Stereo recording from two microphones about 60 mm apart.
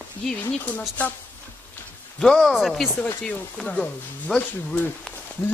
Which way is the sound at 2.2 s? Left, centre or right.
Centre.